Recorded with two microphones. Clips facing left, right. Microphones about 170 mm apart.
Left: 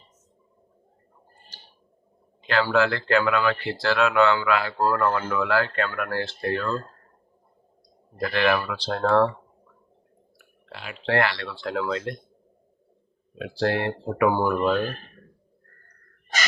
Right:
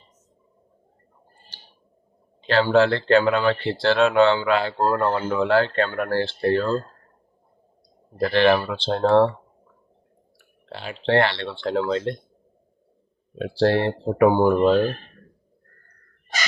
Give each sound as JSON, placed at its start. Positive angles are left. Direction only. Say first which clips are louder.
{"t": 2.4, "sound": "speech", "louder": "right 4 dB", "side_deg": -30}
{"t": 8.2, "sound": "speech", "louder": "right 5 dB", "side_deg": -35}
{"t": 10.3, "sound": "speech", "louder": "right 5 dB", "side_deg": -30}
{"t": 13.4, "sound": "speech", "louder": "right 5 dB", "side_deg": -30}